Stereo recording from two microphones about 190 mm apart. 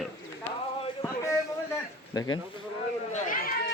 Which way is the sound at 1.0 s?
15° left (ahead or behind).